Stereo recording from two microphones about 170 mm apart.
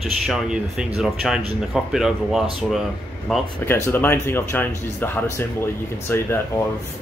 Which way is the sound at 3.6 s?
15° left (ahead or behind).